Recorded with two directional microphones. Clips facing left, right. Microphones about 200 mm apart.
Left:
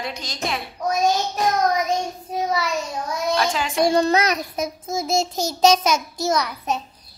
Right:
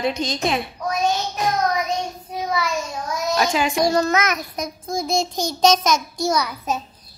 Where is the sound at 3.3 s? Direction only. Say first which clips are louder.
Right 4 dB; 10° right (ahead or behind).